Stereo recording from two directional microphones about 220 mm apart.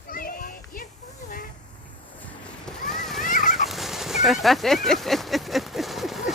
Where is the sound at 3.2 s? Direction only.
35° left (ahead or behind).